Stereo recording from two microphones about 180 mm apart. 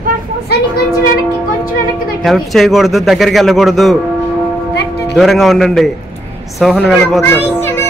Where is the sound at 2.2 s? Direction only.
Centre (ahead or behind).